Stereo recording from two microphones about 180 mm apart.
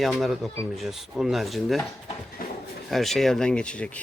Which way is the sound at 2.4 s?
50° left (ahead or behind).